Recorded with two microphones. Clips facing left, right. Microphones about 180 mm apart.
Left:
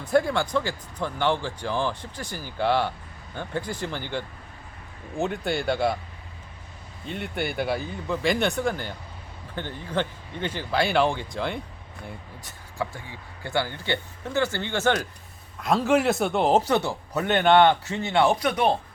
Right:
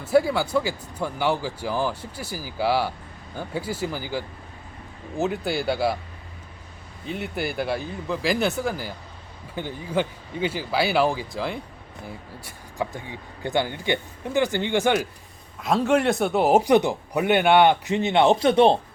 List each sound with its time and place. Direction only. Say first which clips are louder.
0.0 s speech: right 2 dB; 5° right (ahead or behind)
7.0 s speech: right 1 dB; centre (ahead or behind)
15.6 s speech: right 1 dB; centre (ahead or behind); by 18.8 s 30° right (ahead or behind)